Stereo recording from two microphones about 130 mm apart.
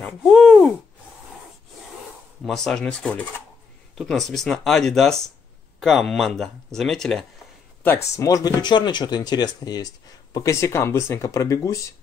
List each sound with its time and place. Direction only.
0.0 s a sound: 5° left (ahead or behind)
2.4 s speech: 5° left (ahead or behind)
7.8 s speech: 20° left (ahead or behind)